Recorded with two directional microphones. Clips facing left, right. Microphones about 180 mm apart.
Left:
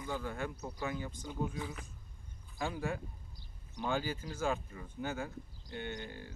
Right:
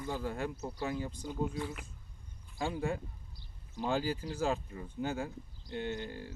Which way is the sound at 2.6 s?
30° right (ahead or behind).